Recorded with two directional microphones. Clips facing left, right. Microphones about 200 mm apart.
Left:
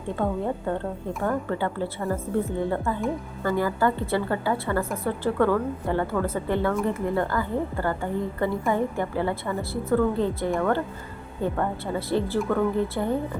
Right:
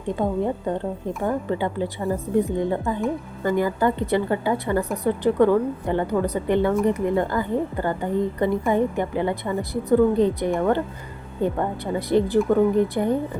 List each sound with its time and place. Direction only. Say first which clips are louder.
0.2 s a woman's voice: right 2 dB; 15° right (ahead or behind)